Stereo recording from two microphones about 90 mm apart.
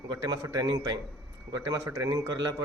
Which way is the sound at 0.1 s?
45° right (ahead or behind).